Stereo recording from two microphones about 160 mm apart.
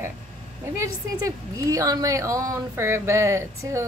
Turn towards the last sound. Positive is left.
turn(degrees=-20)  # may be behind; listen again after turning